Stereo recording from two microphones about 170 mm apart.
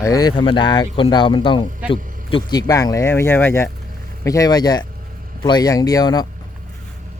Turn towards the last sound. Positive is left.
turn(degrees=20)  # may be behind; listen again after turning